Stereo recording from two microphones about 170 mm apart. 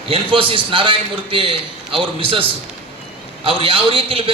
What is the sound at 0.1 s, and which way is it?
A man's voice, 30° right (ahead or behind).